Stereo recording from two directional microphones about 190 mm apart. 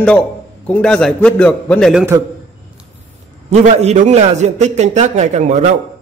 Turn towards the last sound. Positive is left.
turn(degrees=-40)  # may be behind; listen again after turning